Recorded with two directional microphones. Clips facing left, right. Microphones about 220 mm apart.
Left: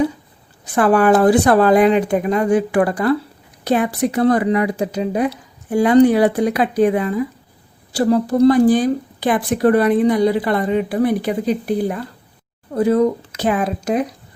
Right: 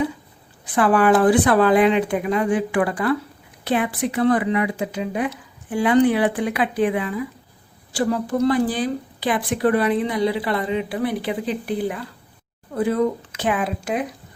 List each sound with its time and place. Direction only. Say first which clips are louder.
0.6 s speech: left 3 dB; 45° left (ahead or behind)